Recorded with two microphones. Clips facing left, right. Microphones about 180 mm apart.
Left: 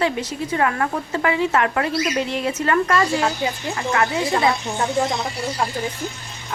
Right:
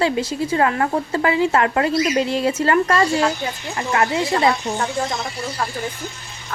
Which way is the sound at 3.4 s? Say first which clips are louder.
Left 3 dB; 15° left (ahead or behind).